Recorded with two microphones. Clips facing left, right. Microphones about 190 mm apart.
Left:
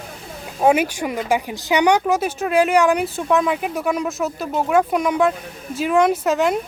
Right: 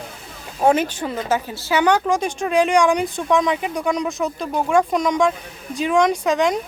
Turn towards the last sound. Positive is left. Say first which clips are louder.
# even
turn(degrees=5)  # may be behind; listen again after turning